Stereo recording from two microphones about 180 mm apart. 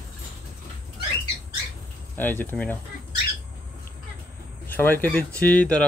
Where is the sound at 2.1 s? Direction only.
10° left (ahead or behind).